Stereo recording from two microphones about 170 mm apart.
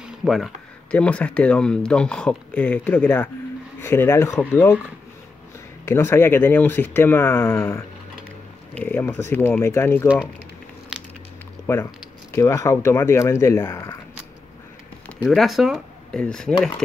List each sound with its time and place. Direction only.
0.0 s a sound: centre (ahead or behind)
0.9 s speech: 5° left (ahead or behind)
5.9 s speech: 15° left (ahead or behind)
10.9 s a sound: 5° right (ahead or behind)
11.6 s speech: 15° left (ahead or behind)
15.0 s speech: centre (ahead or behind)